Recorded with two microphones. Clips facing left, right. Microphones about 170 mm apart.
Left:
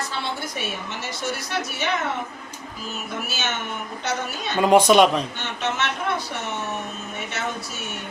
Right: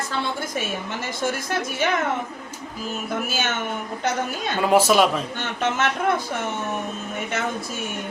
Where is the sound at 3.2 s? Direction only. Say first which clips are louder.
Right 3 dB; 50° right (ahead or behind).